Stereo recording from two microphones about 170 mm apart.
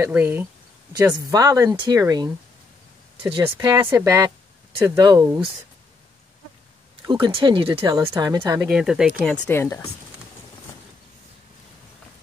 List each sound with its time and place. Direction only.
0.0 s speech: 10° right (ahead or behind)
1.1 s speech: 20° right (ahead or behind)
3.4 s speech: 20° right (ahead or behind)
7.1 s speech: 30° right (ahead or behind)
7.9 s speech: 20° right (ahead or behind)
8.6 s speech: 5° right (ahead or behind)
9.5 s speech: 15° left (ahead or behind)